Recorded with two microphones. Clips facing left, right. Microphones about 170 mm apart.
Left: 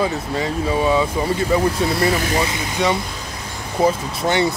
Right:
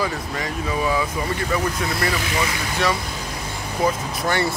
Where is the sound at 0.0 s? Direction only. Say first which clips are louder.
Left 5 dB; 25° left (ahead or behind).